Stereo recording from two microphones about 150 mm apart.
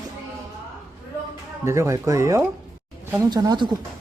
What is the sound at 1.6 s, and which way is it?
Speech, 20° right (ahead or behind).